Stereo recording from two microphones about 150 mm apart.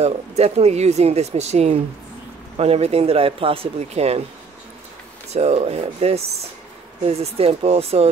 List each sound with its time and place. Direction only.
0.0 s speech: 45° right (ahead or behind)
5.3 s speech: 45° right (ahead or behind)